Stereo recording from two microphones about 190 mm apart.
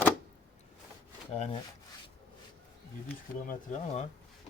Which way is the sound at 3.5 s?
40° left (ahead or behind).